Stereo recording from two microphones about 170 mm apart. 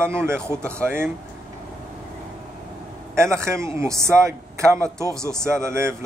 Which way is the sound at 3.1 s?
15° right (ahead or behind).